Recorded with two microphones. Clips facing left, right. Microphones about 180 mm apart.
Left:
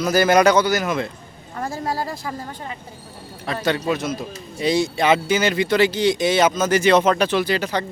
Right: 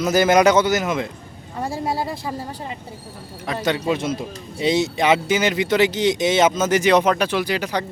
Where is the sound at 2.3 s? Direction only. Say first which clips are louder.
Right 2 dB; 10° right (ahead or behind).